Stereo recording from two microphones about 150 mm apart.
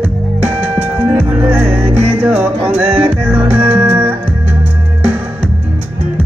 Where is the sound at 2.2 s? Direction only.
15° right (ahead or behind).